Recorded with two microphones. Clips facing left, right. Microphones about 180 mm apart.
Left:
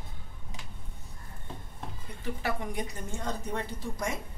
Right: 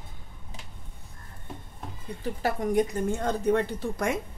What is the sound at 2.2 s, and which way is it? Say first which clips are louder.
A woman's voice: right 5 dB; 40° right (ahead or behind).